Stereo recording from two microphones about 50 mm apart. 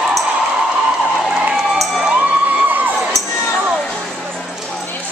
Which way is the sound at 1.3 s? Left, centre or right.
Right.